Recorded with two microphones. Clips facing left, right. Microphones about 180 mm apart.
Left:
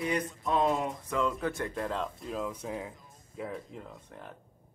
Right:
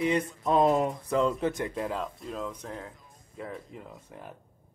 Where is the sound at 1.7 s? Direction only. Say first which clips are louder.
Right 1 dB; centre (ahead or behind).